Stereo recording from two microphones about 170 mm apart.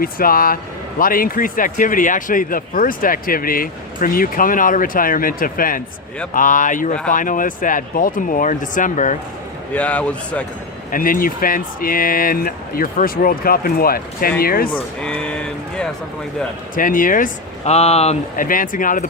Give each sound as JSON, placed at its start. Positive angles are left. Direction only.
{"t": 0.0, "sound": "a man's voice", "side_deg": 55}
{"t": 9.7, "sound": "speech", "side_deg": 10}
{"t": 10.9, "sound": "a man's voice", "side_deg": 55}
{"t": 15.0, "sound": "a sound", "side_deg": 5}
{"t": 16.7, "sound": "speech", "side_deg": 55}
{"t": 17.7, "sound": "speech", "side_deg": 40}
{"t": 18.4, "sound": "speech", "side_deg": 55}